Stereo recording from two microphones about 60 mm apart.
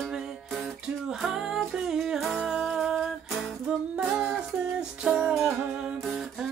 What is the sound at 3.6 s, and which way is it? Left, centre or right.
Music, centre.